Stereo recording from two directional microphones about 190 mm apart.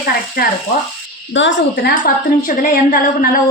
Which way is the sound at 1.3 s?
70° left (ahead or behind).